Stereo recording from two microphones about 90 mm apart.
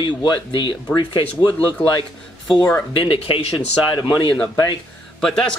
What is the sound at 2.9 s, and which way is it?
Speech, 90° left.